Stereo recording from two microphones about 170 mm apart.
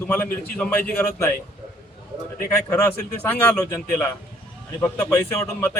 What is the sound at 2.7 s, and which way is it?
Speech, 15° left (ahead or behind).